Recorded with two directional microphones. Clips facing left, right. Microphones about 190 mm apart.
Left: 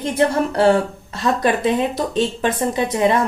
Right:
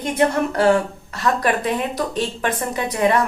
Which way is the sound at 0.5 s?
30° left (ahead or behind).